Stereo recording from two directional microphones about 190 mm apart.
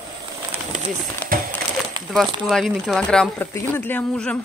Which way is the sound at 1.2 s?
10° left (ahead or behind).